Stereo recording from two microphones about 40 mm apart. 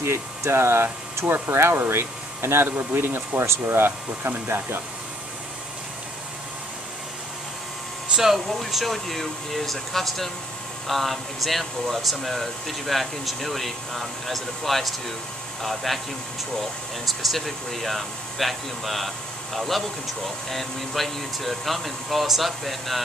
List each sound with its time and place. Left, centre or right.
0.0 s speech: right
0.8 s speech: right
1.5 s speech: right
3.0 s speech: right
8.2 s speech: centre
17.0 s speech: centre